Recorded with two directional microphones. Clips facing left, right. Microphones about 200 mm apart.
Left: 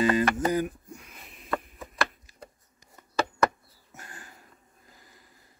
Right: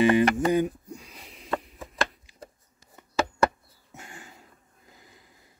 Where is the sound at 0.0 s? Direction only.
25° right (ahead or behind).